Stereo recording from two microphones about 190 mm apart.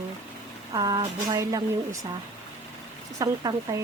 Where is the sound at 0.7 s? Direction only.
20° right (ahead or behind).